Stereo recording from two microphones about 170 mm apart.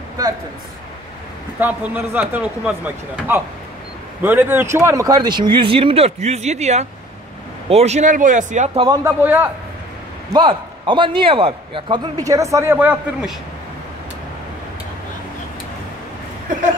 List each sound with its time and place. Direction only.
1.6 s a man's voice: 10° right (ahead or behind); by 8.8 s 40° right (ahead or behind)
9.0 s speech: 10° right (ahead or behind)
10.3 s a man's voice: 30° right (ahead or behind); by 13.3 s 10° right (ahead or behind)